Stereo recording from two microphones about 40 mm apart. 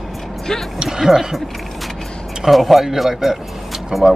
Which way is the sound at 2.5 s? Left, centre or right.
Centre.